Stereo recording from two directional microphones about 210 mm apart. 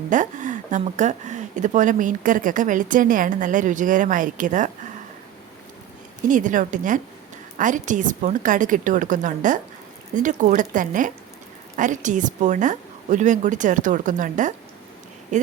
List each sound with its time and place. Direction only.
0.1 s speech: 35° right (ahead or behind)
6.2 s speech: 40° right (ahead or behind)